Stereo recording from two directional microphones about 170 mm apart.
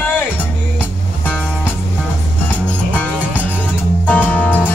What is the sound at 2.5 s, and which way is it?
Music, 10° left (ahead or behind).